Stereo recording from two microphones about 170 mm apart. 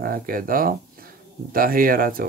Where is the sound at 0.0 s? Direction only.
55° right (ahead or behind).